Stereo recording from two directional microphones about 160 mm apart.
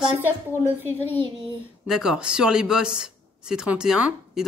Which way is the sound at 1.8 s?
5° right (ahead or behind).